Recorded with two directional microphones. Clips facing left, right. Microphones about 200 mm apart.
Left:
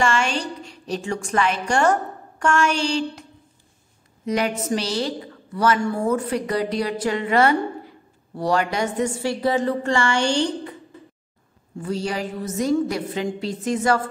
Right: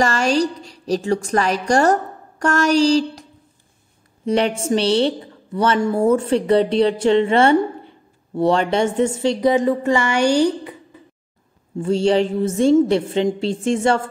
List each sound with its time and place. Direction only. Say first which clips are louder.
0.0 s a woman's voice: right 5 dB; 40° right (ahead or behind)
4.3 s a woman's voice: right 4 dB; 30° right (ahead or behind); by 10.8 s 10° right (ahead or behind)
11.8 s a woman's voice: right 9 dB; 25° right (ahead or behind)